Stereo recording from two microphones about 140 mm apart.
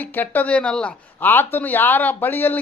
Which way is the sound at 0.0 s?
15° left (ahead or behind).